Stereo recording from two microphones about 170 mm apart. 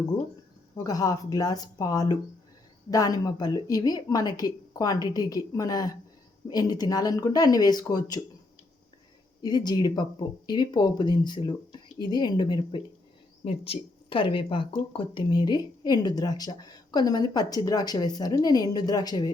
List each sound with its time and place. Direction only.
0.9 s speech: 20° left (ahead or behind)
9.4 s speech: 25° left (ahead or behind)